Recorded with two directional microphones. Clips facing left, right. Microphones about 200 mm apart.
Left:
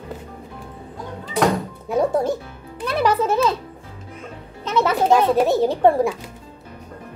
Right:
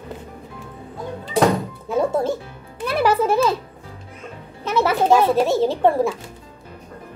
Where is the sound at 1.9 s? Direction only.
15° left (ahead or behind).